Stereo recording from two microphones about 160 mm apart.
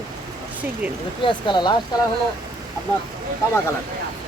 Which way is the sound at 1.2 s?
30° left (ahead or behind).